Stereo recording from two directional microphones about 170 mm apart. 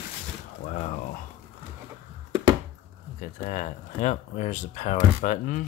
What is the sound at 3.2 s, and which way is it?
Speech, 50° left (ahead or behind).